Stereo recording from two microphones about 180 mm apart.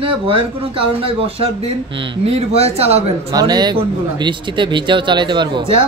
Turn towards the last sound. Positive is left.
turn(degrees=-30)  # may be behind; listen again after turning